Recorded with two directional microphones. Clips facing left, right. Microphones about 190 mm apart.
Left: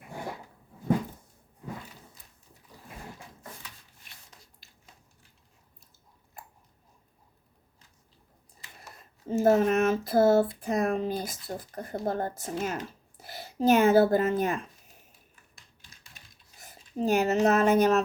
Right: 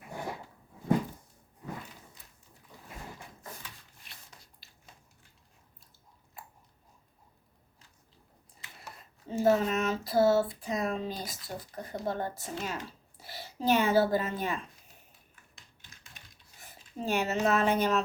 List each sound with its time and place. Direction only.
9.3 s speech: 50° left (ahead or behind)
16.6 s a sound: 45° left (ahead or behind)
17.4 s speech: 45° left (ahead or behind)